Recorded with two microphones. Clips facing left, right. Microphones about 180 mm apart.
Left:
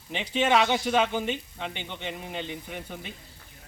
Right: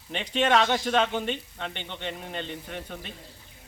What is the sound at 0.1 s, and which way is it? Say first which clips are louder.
Speech: even; 5° left (ahead or behind).